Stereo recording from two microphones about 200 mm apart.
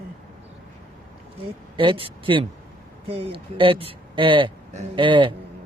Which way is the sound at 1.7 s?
25° right (ahead or behind).